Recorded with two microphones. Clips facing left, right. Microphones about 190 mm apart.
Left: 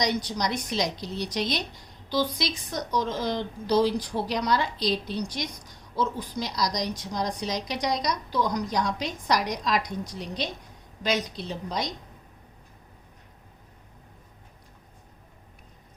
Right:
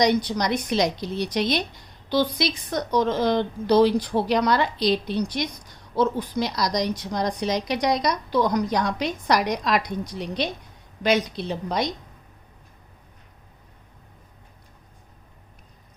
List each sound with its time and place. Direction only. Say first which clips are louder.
0.0 s a woman's voice: right 6 dB; 60° right (ahead or behind)